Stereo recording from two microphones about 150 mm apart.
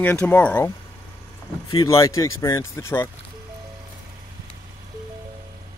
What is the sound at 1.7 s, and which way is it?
Speech, 20° left (ahead or behind).